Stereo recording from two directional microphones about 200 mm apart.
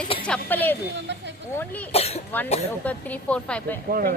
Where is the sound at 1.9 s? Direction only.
30° left (ahead or behind).